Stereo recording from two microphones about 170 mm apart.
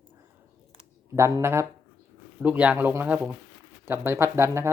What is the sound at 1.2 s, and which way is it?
Speech, 15° right (ahead or behind).